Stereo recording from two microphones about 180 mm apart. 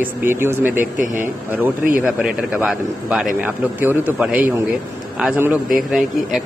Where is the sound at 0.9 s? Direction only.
45° right (ahead or behind).